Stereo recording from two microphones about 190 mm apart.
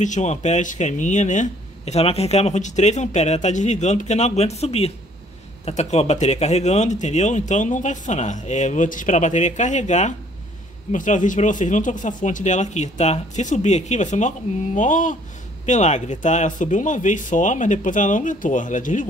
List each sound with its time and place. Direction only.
0.0 s speech: 40° left (ahead or behind)